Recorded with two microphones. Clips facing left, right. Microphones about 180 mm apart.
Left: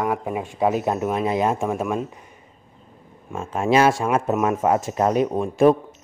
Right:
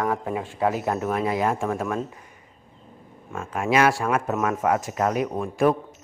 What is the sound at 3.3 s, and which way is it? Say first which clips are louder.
Speech: left 3 dB; 30° left (ahead or behind).